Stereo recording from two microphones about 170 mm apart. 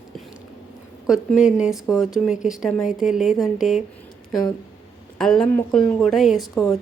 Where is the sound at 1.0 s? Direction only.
5° right (ahead or behind).